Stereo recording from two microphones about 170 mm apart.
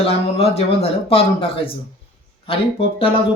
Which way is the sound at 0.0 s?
35° left (ahead or behind).